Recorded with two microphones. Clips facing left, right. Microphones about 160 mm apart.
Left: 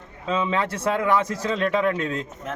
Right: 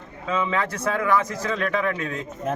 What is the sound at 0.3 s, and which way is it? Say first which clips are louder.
A man's voice: left 1 dB; 30° left (ahead or behind).